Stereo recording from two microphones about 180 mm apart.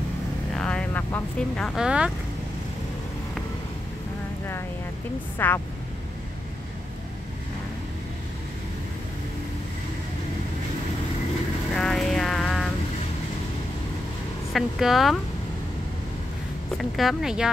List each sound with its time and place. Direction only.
0.6 s speech: 5° left (ahead or behind)
5.4 s speech: 10° left (ahead or behind)
11.7 s music: 5° left (ahead or behind)
14.5 s speech: centre (ahead or behind)
16.7 s speech: centre (ahead or behind)